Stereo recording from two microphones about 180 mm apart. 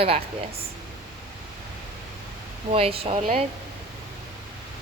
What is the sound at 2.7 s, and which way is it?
Speech, 35° right (ahead or behind).